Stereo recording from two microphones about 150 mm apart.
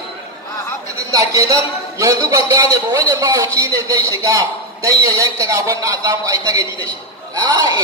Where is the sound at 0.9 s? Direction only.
20° right (ahead or behind).